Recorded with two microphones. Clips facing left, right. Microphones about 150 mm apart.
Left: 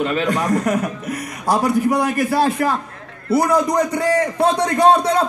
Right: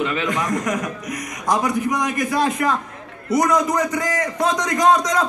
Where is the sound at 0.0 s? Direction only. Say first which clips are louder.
Left 3 dB; 40° left (ahead or behind).